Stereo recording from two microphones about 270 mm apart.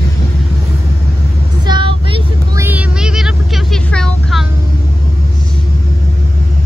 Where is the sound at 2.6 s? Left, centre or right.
Centre.